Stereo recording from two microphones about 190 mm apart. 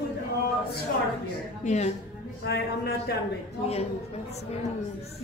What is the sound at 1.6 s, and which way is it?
Speech, 35° left (ahead or behind).